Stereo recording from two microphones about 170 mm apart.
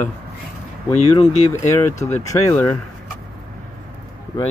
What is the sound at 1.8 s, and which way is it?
Speech, 15° left (ahead or behind).